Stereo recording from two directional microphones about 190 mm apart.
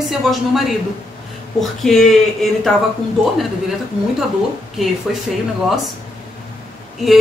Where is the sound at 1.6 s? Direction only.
Centre (ahead or behind).